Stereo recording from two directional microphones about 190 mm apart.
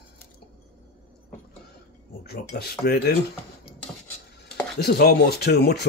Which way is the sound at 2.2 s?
55° left (ahead or behind).